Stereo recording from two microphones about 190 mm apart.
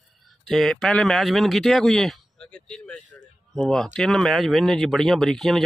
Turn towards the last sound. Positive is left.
turn(degrees=0)  # may be behind; listen again after turning